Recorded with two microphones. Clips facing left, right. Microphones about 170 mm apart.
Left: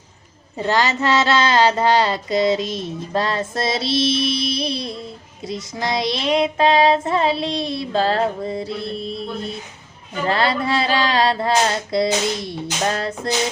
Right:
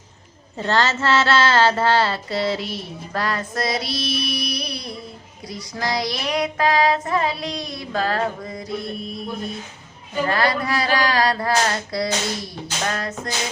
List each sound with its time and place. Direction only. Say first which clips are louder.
0.6 s mantra: left 1 dB; 15° left (ahead or behind)
10.2 s mantra: left 3 dB; 25° left (ahead or behind)